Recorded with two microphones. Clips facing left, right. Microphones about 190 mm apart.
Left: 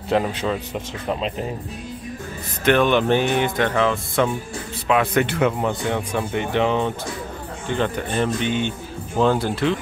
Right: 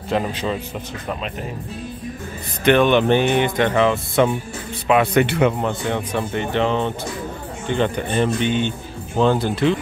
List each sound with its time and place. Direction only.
2.6 s speech: centre (ahead or behind)